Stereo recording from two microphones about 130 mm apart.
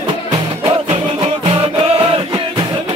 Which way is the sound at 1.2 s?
45° right (ahead or behind).